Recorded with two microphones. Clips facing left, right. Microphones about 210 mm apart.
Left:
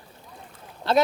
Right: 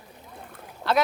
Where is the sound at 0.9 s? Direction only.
25° left (ahead or behind).